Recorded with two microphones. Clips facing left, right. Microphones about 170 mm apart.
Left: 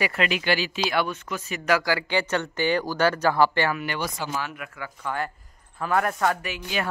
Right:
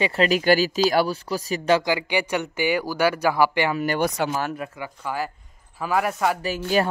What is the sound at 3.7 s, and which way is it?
Speech, 45° right (ahead or behind).